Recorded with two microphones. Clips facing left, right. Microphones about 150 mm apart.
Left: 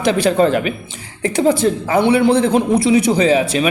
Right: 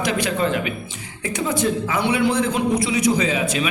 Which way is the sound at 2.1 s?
30° left (ahead or behind).